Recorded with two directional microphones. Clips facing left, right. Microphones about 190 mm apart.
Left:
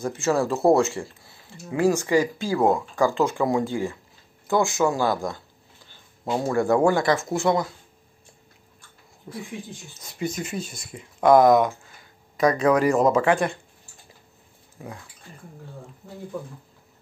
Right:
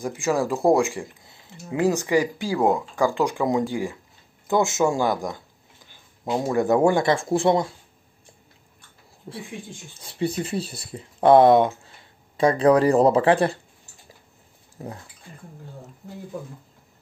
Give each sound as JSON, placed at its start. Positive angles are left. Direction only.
{"t": 0.0, "sound": "speech", "side_deg": -15}
{"t": 9.9, "sound": "speech", "side_deg": -30}
{"t": 14.8, "sound": "speech", "side_deg": -35}